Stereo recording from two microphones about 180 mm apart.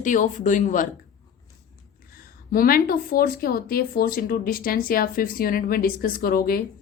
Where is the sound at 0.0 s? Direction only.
45° left (ahead or behind).